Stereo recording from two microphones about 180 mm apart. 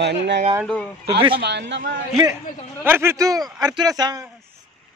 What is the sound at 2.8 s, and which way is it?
A man's voice, 15° right (ahead or behind).